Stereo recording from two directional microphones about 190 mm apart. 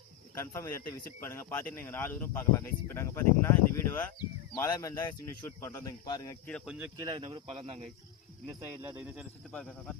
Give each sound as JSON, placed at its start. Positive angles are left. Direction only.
{"t": 0.3, "sound": "speech", "side_deg": 15}
{"t": 6.5, "sound": "speech", "side_deg": -5}
{"t": 6.9, "sound": "speech", "side_deg": -25}
{"t": 8.8, "sound": "speech", "side_deg": -5}
{"t": 9.5, "sound": "speech", "side_deg": 5}